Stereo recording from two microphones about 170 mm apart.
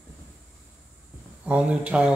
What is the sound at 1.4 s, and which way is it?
Speech, 5° right (ahead or behind).